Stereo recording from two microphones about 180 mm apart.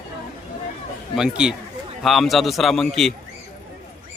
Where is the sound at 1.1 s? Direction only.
5° right (ahead or behind).